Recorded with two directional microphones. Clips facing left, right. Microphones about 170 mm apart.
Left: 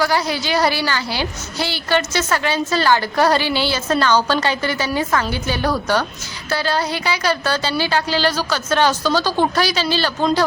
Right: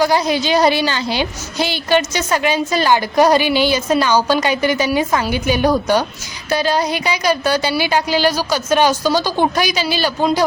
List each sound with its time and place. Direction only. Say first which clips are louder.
0.0 s a woman's voice: right 4 dB; 20° right (ahead or behind)